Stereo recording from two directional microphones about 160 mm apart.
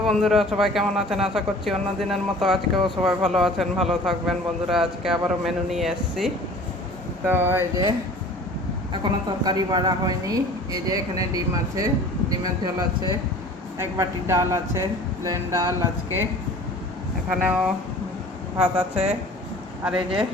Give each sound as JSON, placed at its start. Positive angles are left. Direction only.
{"t": 0.0, "sound": "a man's voice", "side_deg": 0}
{"t": 7.3, "sound": "speech", "side_deg": -15}
{"t": 9.4, "sound": "speech", "side_deg": -25}
{"t": 13.7, "sound": "speech", "side_deg": -20}
{"t": 17.2, "sound": "a man's voice", "side_deg": -10}